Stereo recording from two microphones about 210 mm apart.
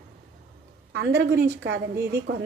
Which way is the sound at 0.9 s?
55° right (ahead or behind).